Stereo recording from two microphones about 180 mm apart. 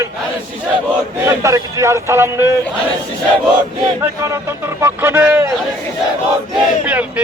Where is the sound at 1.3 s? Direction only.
15° right (ahead or behind).